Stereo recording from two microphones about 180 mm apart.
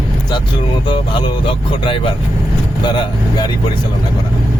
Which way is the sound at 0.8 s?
25° left (ahead or behind).